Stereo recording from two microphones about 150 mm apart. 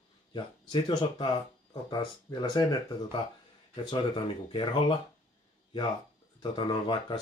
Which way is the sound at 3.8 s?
30° left (ahead or behind).